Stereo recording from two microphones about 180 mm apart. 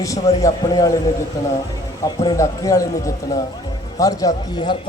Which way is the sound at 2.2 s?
20° left (ahead or behind).